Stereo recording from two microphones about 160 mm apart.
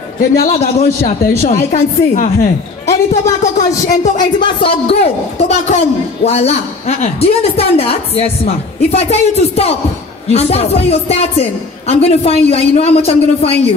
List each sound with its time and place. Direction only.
0.2 s a man's voice: 55° left (ahead or behind)
0.6 s a woman's voice: 45° left (ahead or behind)
4.2 s a woman's voice: 30° left (ahead or behind)